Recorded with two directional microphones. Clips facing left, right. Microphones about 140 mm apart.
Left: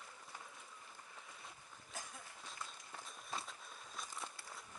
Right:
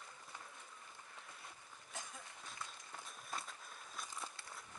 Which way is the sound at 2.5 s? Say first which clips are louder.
Left 1 dB; centre (ahead or behind).